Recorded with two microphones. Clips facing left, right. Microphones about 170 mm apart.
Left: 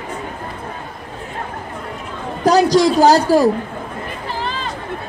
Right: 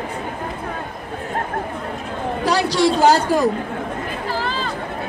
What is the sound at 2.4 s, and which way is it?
A man's voice, 40° left (ahead or behind).